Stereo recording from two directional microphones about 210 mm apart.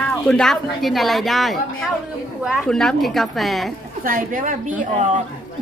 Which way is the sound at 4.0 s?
40° right (ahead or behind).